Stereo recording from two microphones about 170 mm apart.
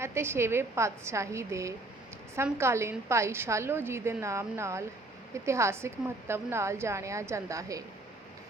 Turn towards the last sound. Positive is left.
turn(degrees=-20)  # may be behind; listen again after turning